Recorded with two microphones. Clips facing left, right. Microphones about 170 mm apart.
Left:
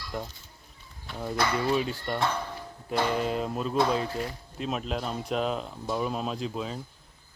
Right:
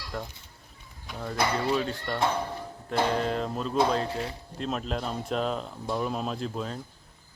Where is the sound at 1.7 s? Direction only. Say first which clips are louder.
Left 1 dB; 15° left (ahead or behind).